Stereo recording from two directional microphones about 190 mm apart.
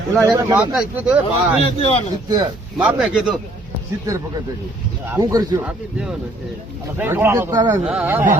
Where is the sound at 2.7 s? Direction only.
5° right (ahead or behind).